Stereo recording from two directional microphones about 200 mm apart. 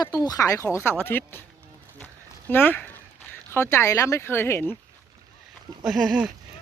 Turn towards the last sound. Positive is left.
turn(degrees=-5)  # may be behind; listen again after turning